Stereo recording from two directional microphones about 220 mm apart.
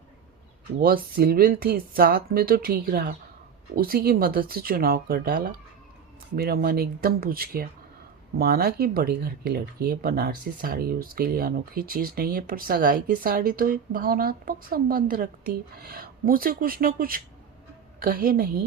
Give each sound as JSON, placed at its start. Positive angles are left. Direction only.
{"t": 0.8, "sound": "speech", "side_deg": -40}